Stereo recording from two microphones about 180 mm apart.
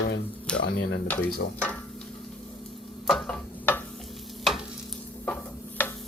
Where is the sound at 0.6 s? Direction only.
65° left (ahead or behind).